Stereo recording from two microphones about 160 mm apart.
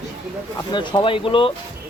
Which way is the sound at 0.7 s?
30° left (ahead or behind).